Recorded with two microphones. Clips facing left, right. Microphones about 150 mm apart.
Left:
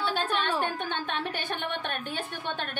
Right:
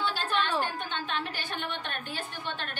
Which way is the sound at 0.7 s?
55° left (ahead or behind).